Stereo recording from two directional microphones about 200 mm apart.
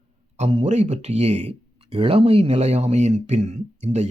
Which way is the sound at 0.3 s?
35° right (ahead or behind).